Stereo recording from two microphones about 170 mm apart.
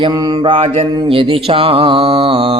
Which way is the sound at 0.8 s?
25° right (ahead or behind).